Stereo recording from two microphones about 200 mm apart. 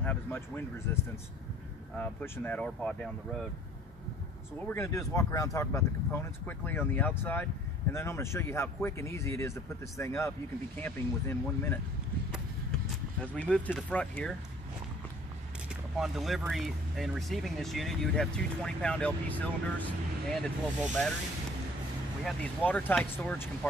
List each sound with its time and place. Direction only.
0.0 s speech: 10° left (ahead or behind)
4.7 s speech: 15° left (ahead or behind)
13.2 s speech: 5° left (ahead or behind)
16.0 s speech: centre (ahead or behind)
22.2 s speech: 5° left (ahead or behind)